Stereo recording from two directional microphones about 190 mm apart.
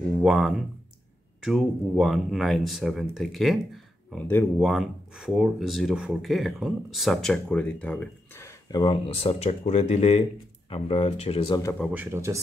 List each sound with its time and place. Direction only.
0.2 s speech: 5° right (ahead or behind); by 11.7 s 25° left (ahead or behind)
11.9 s speech: 10° right (ahead or behind)